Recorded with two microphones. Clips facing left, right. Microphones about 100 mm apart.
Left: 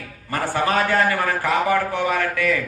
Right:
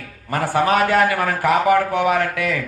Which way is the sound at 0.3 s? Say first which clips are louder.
Right 4 dB; 70° right (ahead or behind).